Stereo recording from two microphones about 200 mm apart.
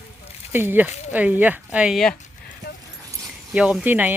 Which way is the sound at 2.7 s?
50° left (ahead or behind).